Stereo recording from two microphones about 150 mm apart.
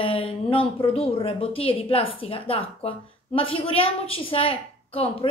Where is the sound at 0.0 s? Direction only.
35° left (ahead or behind).